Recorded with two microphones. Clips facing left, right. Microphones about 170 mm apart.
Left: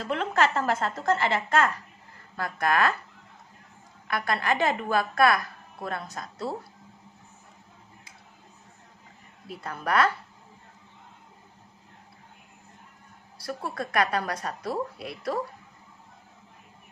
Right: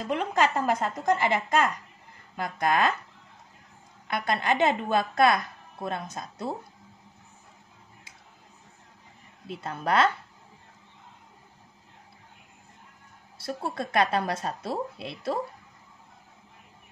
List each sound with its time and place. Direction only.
0.0 s a woman's voice: 15° right (ahead or behind)
4.1 s a woman's voice: 20° right (ahead or behind)
9.5 s a woman's voice: 25° right (ahead or behind)
13.4 s a woman's voice: 25° right (ahead or behind)